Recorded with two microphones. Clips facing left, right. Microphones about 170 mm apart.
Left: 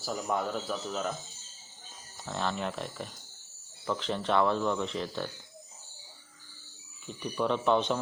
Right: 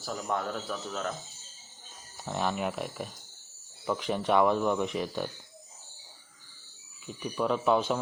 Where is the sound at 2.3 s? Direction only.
15° right (ahead or behind).